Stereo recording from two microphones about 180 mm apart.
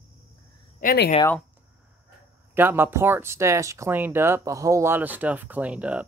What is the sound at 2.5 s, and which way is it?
Speech, 10° right (ahead or behind).